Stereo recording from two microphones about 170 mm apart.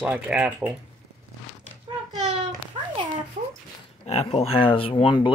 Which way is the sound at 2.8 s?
35° right (ahead or behind).